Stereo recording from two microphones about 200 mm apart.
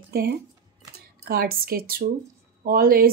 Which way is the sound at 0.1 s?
50° right (ahead or behind).